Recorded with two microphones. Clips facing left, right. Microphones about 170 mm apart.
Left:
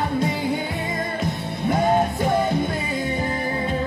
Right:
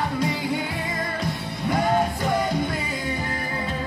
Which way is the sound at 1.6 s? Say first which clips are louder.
Left 2 dB; 25° left (ahead or behind).